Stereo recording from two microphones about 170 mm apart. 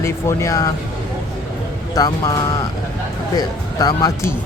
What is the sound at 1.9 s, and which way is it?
Speech, 20° left (ahead or behind).